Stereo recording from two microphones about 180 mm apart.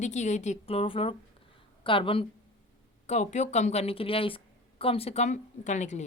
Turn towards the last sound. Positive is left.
turn(degrees=40)  # may be behind; listen again after turning